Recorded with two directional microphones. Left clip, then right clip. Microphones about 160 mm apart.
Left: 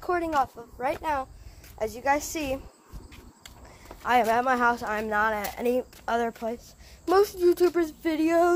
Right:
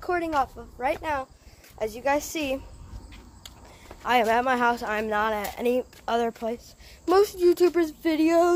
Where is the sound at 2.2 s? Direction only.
20° right (ahead or behind).